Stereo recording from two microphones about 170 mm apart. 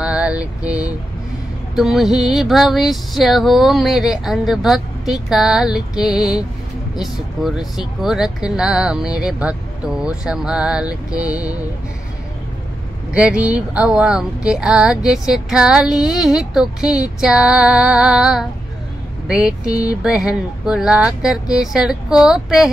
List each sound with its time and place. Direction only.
0.0 s mantra: 5° right (ahead or behind)
0.6 s vehicle: 20° left (ahead or behind)
1.8 s music: centre (ahead or behind)
9.1 s speech: 5° right (ahead or behind)
10.0 s music: 5° right (ahead or behind)
13.1 s music: 5° right (ahead or behind)